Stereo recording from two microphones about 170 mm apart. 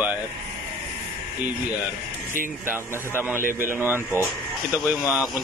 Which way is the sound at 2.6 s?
15° right (ahead or behind).